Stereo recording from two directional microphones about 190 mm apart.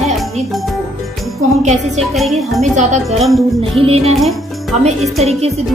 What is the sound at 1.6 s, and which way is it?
Speech, 40° right (ahead or behind).